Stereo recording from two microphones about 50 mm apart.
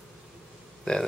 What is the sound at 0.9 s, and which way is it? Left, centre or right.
Speech, centre.